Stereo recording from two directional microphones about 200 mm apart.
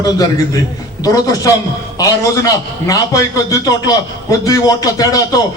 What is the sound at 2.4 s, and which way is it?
A man's voice, 15° left (ahead or behind).